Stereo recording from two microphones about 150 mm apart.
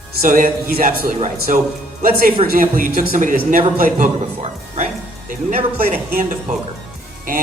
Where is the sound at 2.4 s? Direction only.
40° right (ahead or behind).